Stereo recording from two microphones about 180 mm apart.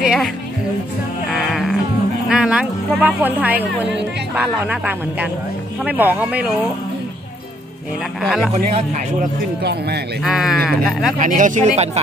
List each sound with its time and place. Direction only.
0.0 s music: 5° right (ahead or behind)
1.3 s music: centre (ahead or behind)
2.2 s speech: 5° right (ahead or behind)
8.2 s speech: centre (ahead or behind)
8.5 s speech: 40° right (ahead or behind)
9.6 s speech: 65° right (ahead or behind)
10.2 s speech: centre (ahead or behind)
11.1 s speech: 45° right (ahead or behind)